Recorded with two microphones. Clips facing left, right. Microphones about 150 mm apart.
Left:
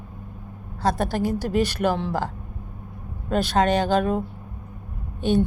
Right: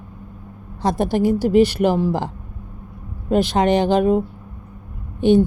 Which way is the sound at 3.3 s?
15° right (ahead or behind).